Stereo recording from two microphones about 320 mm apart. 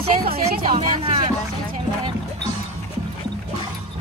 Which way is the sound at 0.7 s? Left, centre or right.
Centre.